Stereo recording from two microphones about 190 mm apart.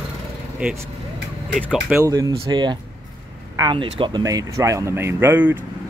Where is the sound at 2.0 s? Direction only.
20° right (ahead or behind).